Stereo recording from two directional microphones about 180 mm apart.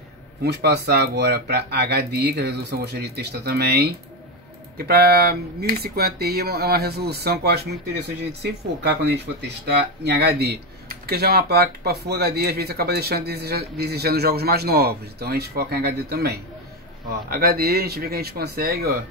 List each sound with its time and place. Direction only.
0.4 s speech: 70° right (ahead or behind)